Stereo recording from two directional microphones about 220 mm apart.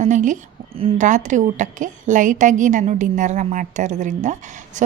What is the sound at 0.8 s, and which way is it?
A woman's voice, 30° right (ahead or behind).